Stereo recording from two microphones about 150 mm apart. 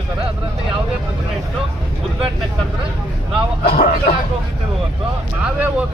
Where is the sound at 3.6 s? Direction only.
85° left.